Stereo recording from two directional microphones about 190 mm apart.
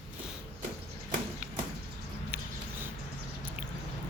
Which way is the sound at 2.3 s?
10° right (ahead or behind).